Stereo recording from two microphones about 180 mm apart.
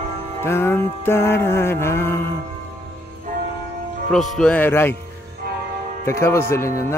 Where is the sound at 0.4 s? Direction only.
15° left (ahead or behind).